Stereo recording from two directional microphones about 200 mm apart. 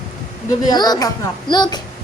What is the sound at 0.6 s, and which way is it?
A woman's voice, 20° left (ahead or behind).